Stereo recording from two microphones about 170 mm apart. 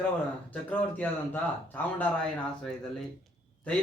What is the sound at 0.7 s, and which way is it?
Speech, 10° left (ahead or behind).